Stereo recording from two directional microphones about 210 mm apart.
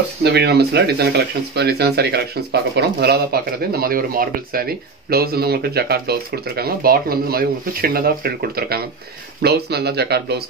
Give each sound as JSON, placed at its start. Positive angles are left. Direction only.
{"t": 0.2, "sound": "speech", "side_deg": -50}